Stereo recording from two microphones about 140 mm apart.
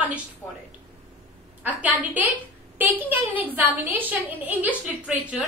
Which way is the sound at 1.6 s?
10° right (ahead or behind).